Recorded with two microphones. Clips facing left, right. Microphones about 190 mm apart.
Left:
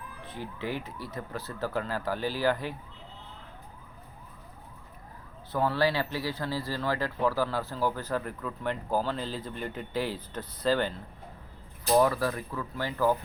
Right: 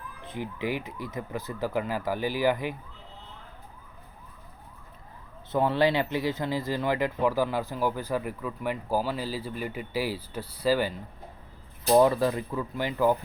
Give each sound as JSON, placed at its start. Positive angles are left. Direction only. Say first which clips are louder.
{"t": 0.3, "sound": "speech", "louder": "right 4 dB", "side_deg": -15}
{"t": 5.5, "sound": "speech", "louder": "right 3 dB", "side_deg": -20}
{"t": 11.9, "sound": "speech", "louder": "right 3 dB", "side_deg": -25}